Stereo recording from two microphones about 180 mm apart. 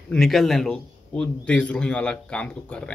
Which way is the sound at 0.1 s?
Centre (ahead or behind).